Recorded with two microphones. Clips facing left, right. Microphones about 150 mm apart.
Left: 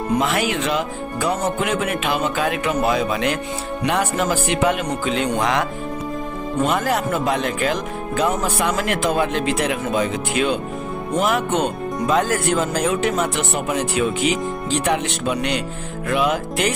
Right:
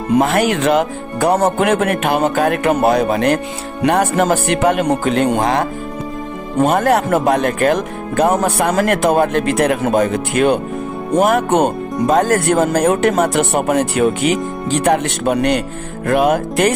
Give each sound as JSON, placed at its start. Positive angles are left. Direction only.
{"t": 0.2, "sound": "speech", "side_deg": -50}
{"t": 6.6, "sound": "speech", "side_deg": -55}